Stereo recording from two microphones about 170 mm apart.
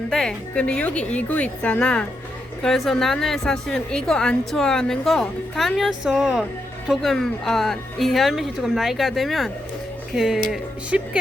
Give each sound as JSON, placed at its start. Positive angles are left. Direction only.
{"t": 0.1, "sound": "a woman's voice", "side_deg": 5}